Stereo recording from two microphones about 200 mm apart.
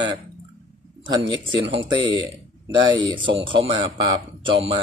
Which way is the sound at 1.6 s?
25° right (ahead or behind).